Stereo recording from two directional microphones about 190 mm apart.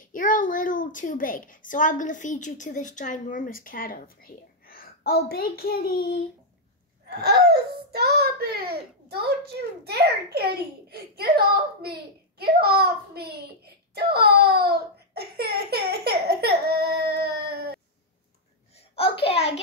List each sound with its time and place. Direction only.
0.0 s a child's voice: 45° left (ahead or behind)
7.1 s a child's voice: 60° right (ahead or behind)
18.8 s a child's voice: 30° left (ahead or behind)